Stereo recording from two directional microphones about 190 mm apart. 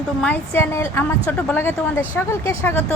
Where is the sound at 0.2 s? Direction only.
10° left (ahead or behind).